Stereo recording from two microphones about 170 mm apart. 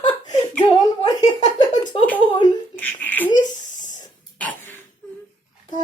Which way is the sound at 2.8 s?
10° left (ahead or behind).